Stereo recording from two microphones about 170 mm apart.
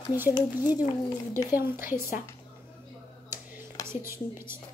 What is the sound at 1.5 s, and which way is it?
Speech, 15° right (ahead or behind).